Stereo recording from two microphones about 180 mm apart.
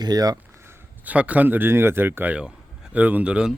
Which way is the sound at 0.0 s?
20° right (ahead or behind).